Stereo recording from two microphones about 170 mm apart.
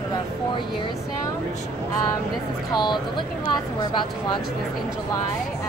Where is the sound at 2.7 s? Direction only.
25° left (ahead or behind).